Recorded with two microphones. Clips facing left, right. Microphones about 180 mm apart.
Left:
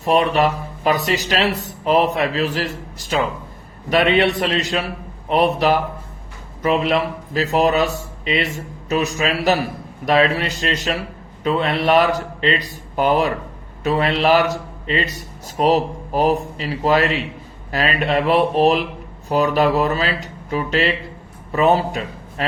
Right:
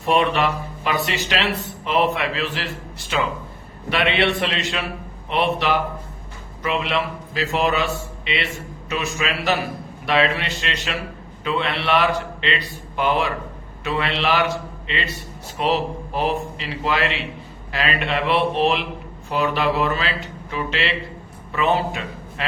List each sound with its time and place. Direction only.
0.0 s a man's voice: 40° left (ahead or behind)